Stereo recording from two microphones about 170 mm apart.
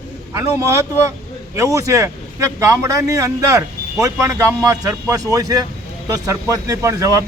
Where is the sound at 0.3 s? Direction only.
15° right (ahead or behind).